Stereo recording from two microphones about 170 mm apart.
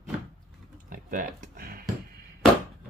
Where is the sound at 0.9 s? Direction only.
55° right (ahead or behind).